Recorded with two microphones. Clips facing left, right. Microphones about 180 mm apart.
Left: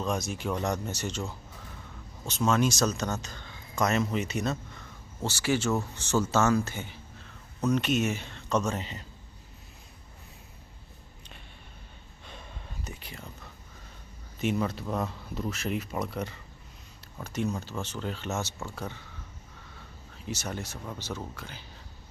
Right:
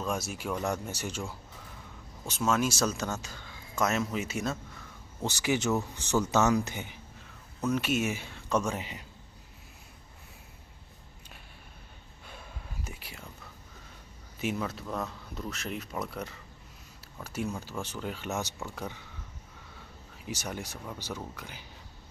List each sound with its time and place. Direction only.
0.0 s speech: 5° right (ahead or behind)
5.2 s speech: 15° right (ahead or behind)
7.6 s speech: 5° right (ahead or behind)
12.3 s a sound: 5° right (ahead or behind)
14.4 s speech: 5° right (ahead or behind)
20.2 s speech: 15° right (ahead or behind)